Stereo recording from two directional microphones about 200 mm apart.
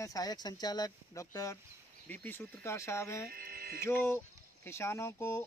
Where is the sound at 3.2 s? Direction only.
50° right (ahead or behind).